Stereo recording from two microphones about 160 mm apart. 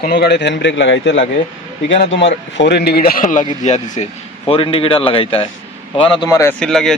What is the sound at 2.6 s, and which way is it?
A man's voice, 90° left.